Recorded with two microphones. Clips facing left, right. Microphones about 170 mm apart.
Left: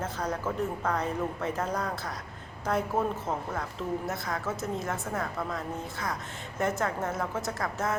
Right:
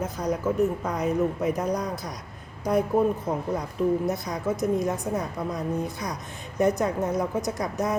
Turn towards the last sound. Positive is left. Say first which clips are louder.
# right 4 dB
turn(degrees=-15)  # may be behind; listen again after turning